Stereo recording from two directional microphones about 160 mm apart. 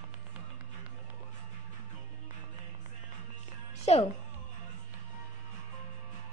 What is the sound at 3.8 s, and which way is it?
Music, 40° left (ahead or behind).